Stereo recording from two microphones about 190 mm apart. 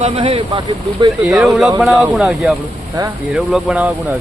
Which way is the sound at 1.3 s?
Centre (ahead or behind).